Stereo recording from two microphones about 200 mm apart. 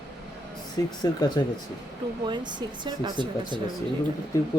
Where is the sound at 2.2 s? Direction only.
20° right (ahead or behind).